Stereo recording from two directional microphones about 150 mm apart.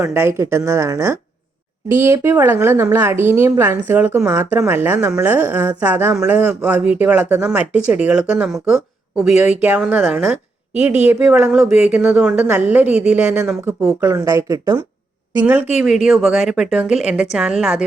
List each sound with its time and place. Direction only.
0.0 s speech: 15° right (ahead or behind)
15.7 s speech: 5° right (ahead or behind)